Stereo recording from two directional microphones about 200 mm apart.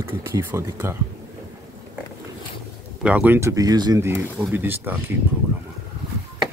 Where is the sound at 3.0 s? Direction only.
10° right (ahead or behind).